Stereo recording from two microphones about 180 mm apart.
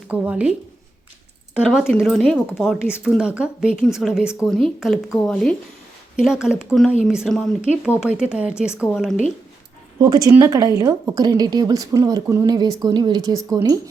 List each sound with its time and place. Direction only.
0.1 s speech: 5° right (ahead or behind)
1.5 s speech: 5° right (ahead or behind)
10.0 s speech: 20° right (ahead or behind)